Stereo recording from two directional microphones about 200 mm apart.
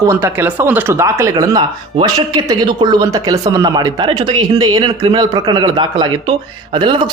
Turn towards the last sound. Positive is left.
turn(degrees=-25)  # may be behind; listen again after turning